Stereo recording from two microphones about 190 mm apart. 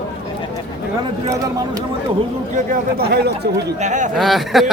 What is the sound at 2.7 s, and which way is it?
Speech, 50° right (ahead or behind).